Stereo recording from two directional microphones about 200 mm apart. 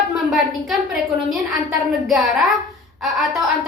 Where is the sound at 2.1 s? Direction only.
Centre (ahead or behind).